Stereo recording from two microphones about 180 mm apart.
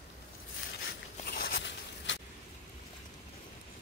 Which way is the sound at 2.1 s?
90° left.